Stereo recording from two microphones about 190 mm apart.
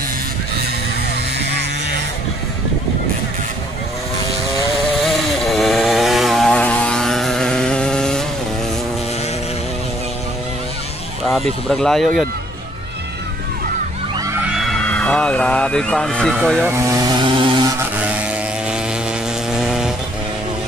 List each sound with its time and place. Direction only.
5.0 s chainsaw: centre (ahead or behind)
11.7 s speech: centre (ahead or behind)
14.5 s speech: centre (ahead or behind)
16.6 s speech: 15° right (ahead or behind)
19.5 s vehicle: 5° right (ahead or behind)